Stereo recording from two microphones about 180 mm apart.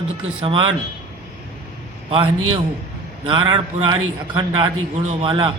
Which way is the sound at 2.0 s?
30° right (ahead or behind).